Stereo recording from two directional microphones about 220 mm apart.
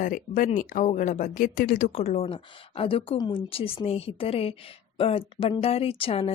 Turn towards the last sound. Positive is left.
turn(degrees=25)  # may be behind; listen again after turning